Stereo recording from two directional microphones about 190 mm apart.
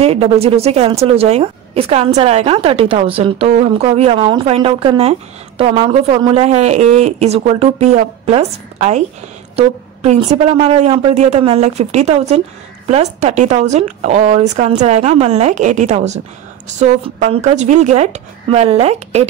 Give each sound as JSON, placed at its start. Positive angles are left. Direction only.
{"t": 0.0, "sound": "speech", "side_deg": -30}